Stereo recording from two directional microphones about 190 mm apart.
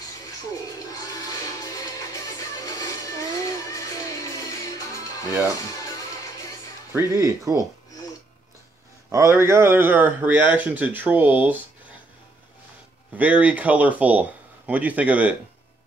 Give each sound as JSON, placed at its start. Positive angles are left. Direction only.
{"t": 2.6, "sound": "music", "side_deg": 20}
{"t": 6.9, "sound": "speech", "side_deg": -15}
{"t": 9.1, "sound": "speech", "side_deg": -15}
{"t": 13.1, "sound": "speech", "side_deg": -5}